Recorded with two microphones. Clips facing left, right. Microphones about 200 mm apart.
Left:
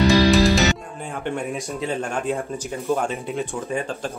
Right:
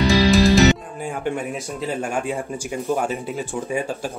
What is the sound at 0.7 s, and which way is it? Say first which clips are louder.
A man's voice: right 3 dB; 5° right (ahead or behind).